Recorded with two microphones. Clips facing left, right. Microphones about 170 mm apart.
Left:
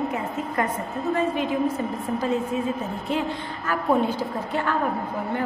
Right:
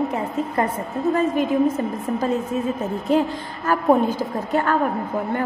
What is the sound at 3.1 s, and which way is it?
A woman's voice, 40° right (ahead or behind).